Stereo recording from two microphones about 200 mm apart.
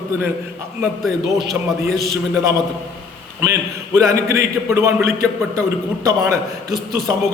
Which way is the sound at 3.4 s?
15° right (ahead or behind).